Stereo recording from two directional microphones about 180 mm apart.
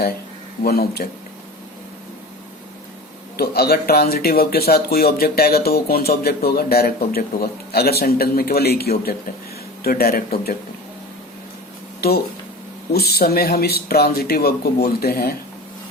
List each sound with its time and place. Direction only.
0.6 s speech: 60° left (ahead or behind)
3.3 s speech: 60° left (ahead or behind)
11.9 s speech: 60° left (ahead or behind)